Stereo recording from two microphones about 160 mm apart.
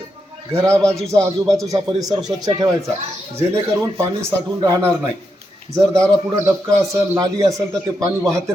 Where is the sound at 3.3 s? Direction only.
15° right (ahead or behind).